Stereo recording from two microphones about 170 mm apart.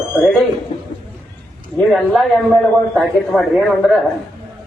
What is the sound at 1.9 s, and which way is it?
A man's voice, centre (ahead or behind).